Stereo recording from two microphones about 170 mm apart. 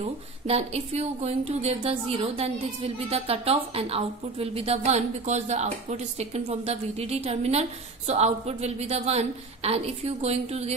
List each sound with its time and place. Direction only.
0.0 s speech: 35° right (ahead or behind)